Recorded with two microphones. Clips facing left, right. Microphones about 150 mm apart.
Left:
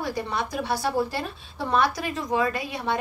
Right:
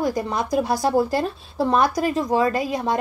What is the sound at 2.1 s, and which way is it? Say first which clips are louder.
Speech: right 5 dB; 30° right (ahead or behind).